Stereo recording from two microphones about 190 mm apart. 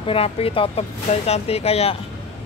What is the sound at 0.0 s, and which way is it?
Speech, 30° left (ahead or behind).